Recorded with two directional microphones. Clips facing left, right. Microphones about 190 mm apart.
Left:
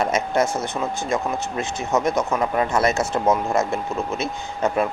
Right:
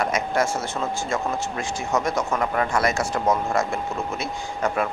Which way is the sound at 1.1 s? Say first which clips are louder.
Left 2 dB; 20° left (ahead or behind).